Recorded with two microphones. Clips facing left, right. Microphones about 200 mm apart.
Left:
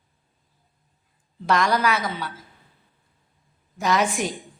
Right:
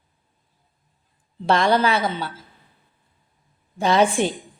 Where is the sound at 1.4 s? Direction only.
30° right (ahead or behind).